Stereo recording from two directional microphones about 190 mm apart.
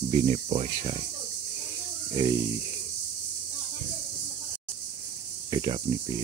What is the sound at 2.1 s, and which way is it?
Speech, 20° right (ahead or behind).